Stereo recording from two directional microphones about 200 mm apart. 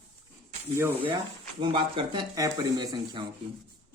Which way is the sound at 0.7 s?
10° right (ahead or behind).